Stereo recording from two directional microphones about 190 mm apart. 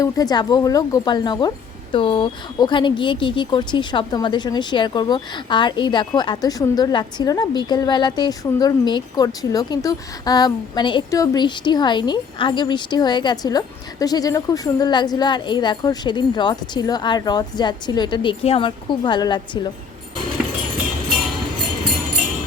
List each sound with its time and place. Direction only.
0.0 s speech: 20° left (ahead or behind)